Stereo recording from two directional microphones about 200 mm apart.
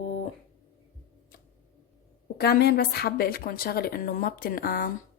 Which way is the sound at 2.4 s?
50° left (ahead or behind).